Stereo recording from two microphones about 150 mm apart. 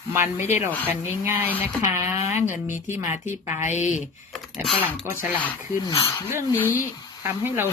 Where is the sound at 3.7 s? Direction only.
55° left (ahead or behind).